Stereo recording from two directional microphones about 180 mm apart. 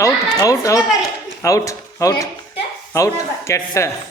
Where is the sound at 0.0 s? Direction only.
15° left (ahead or behind).